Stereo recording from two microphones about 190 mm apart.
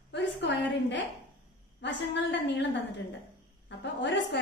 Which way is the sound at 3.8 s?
65° left (ahead or behind).